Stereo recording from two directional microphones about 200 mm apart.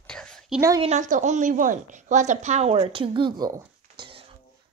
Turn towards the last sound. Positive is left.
turn(degrees=-25)  # may be behind; listen again after turning